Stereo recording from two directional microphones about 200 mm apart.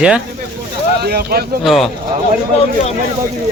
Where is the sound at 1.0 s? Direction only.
50° right (ahead or behind).